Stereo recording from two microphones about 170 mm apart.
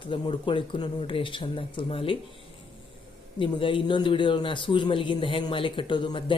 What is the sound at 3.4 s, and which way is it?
Speech, 30° left (ahead or behind).